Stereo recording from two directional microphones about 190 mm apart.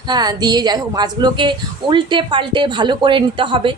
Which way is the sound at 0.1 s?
20° right (ahead or behind).